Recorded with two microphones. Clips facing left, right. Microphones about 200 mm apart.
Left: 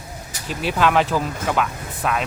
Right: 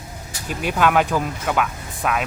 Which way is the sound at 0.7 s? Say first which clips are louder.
Even; 5° right (ahead or behind).